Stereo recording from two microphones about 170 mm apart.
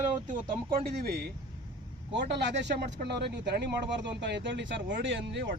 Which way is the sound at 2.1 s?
90° right.